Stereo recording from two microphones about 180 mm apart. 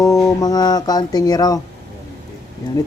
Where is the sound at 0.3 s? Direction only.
20° left (ahead or behind).